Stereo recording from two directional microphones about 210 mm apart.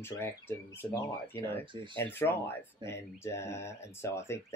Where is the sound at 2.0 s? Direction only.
10° left (ahead or behind).